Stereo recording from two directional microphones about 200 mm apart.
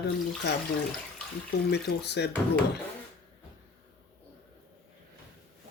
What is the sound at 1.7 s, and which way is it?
Speech, 60° left (ahead or behind).